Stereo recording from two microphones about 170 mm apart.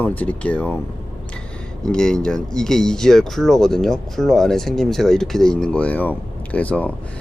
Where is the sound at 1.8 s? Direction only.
5° left (ahead or behind).